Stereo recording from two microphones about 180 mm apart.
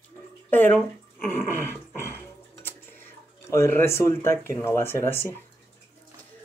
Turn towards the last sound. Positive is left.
turn(degrees=10)  # may be behind; listen again after turning